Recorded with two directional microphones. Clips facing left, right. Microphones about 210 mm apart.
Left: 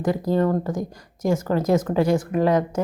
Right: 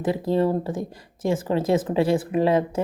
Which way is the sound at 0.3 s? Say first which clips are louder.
Even; 30° right (ahead or behind).